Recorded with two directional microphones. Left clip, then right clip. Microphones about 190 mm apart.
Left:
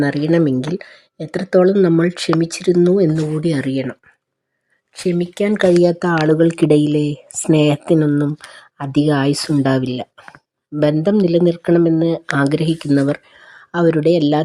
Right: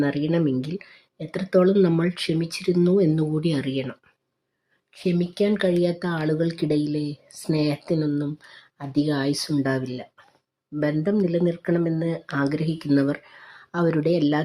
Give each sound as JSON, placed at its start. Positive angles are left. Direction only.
{"t": 0.0, "sound": "speech", "side_deg": 35}
{"t": 5.0, "sound": "speech", "side_deg": 35}